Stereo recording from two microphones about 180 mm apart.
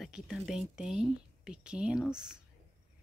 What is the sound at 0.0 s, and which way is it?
Speech, centre (ahead or behind).